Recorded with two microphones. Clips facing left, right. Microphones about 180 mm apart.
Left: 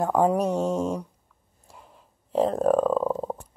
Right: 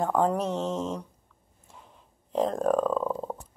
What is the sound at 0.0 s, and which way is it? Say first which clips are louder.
Speech: left 3 dB; 10° left (ahead or behind).